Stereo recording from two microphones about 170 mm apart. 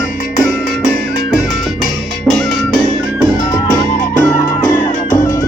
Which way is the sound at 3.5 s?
15° left (ahead or behind).